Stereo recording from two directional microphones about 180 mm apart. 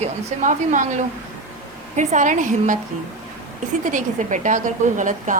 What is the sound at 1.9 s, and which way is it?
Speech, 40° right (ahead or behind).